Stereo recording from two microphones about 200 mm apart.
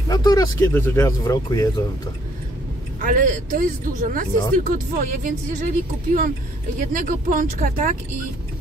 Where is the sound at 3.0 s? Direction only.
40° right (ahead or behind).